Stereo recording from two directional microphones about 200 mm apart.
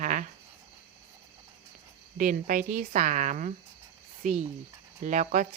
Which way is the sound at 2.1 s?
40° right (ahead or behind).